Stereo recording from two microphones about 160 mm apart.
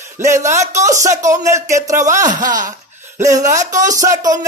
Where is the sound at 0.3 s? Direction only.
15° right (ahead or behind).